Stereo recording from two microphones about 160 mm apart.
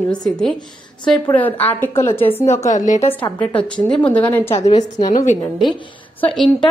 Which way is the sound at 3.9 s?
10° left (ahead or behind).